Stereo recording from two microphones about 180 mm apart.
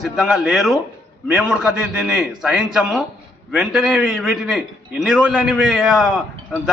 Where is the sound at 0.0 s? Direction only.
Centre (ahead or behind).